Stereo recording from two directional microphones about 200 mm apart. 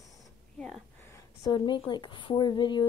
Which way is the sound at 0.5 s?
5° left (ahead or behind).